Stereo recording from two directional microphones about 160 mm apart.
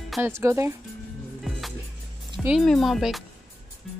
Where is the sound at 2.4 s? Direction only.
Centre (ahead or behind).